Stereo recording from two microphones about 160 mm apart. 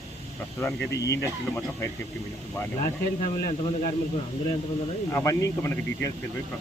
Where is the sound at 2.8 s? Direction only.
55° left (ahead or behind).